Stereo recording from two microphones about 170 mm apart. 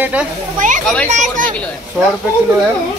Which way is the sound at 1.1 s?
45° right (ahead or behind).